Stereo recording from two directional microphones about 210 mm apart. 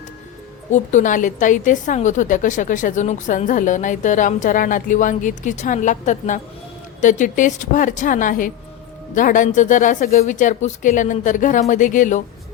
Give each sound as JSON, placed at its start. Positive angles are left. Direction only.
{"t": 0.7, "sound": "a woman's voice", "side_deg": 35}